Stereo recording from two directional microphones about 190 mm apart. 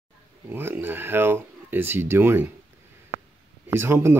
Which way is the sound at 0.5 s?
10° right (ahead or behind).